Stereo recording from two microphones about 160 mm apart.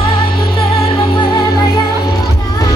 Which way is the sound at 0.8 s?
35° left (ahead or behind).